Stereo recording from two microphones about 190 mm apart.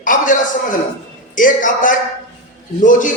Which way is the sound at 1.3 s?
45° left (ahead or behind).